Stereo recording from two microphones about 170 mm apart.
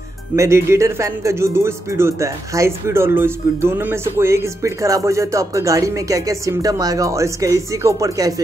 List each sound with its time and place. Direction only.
0.4 s speech: 15° right (ahead or behind)